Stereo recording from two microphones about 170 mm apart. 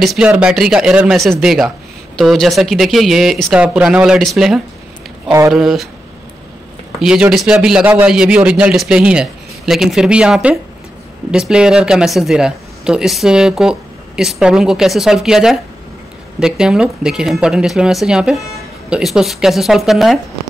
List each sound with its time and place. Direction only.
0.0 s speech: centre (ahead or behind)
7.0 s speech: 5° right (ahead or behind)